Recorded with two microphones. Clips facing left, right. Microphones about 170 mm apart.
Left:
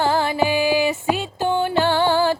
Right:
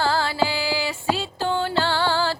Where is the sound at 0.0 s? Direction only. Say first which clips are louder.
Left 3 dB; 20° left (ahead or behind).